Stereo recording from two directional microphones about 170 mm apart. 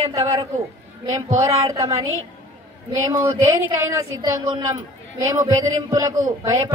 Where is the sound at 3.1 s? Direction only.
20° right (ahead or behind).